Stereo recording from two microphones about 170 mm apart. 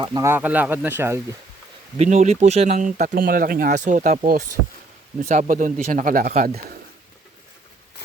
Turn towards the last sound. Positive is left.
turn(degrees=-60)  # may be behind; listen again after turning